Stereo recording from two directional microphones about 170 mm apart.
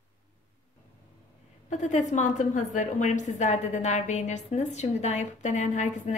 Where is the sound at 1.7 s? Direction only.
45° left (ahead or behind).